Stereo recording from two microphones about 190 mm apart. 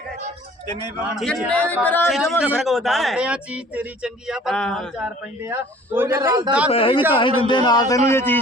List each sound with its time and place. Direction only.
1.1 s speech: centre (ahead or behind); by 6.5 s 15° right (ahead or behind)
6.7 s speech: 30° left (ahead or behind); by 8.4 s 10° left (ahead or behind)